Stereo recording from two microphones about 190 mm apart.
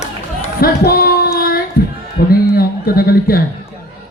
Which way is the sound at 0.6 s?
55° left (ahead or behind).